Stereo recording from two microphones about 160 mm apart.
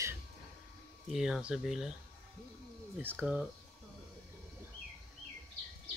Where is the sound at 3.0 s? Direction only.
10° right (ahead or behind).